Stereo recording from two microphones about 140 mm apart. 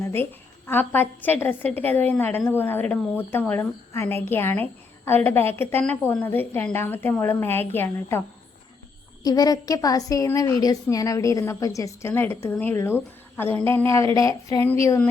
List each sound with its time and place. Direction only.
0.0 s a sound: 15° left (ahead or behind)
0.7 s a woman's voice: 15° left (ahead or behind)
9.2 s a woman's voice: 25° left (ahead or behind)